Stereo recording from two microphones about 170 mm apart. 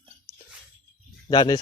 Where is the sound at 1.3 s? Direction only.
25° left (ahead or behind).